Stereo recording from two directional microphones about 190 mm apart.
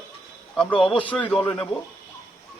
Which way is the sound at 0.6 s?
5° left (ahead or behind).